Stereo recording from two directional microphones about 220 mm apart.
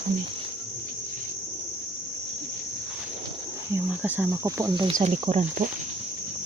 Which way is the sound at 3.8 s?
10° right (ahead or behind).